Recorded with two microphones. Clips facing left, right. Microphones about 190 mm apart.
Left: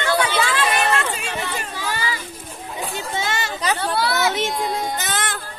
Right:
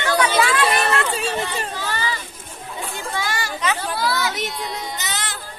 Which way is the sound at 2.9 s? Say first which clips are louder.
Left 1 dB; 20° left (ahead or behind).